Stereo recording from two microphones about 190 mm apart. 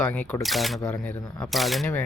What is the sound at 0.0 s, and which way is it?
Speech, 10° left (ahead or behind).